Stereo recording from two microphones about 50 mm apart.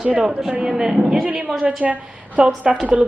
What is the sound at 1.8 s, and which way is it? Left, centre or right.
Speech, right.